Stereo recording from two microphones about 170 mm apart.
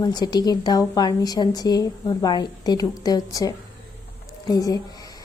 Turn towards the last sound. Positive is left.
turn(degrees=20)  # may be behind; listen again after turning